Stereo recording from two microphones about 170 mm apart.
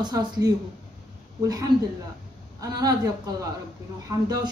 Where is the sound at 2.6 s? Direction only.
25° right (ahead or behind).